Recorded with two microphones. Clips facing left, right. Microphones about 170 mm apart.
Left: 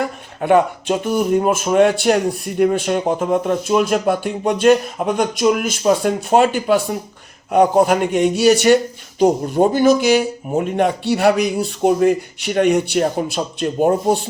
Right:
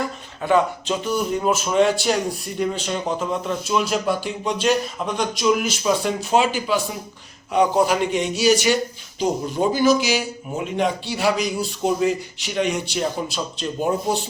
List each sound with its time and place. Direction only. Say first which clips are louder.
0.0 s speech: left 5 dB; 55° left (ahead or behind)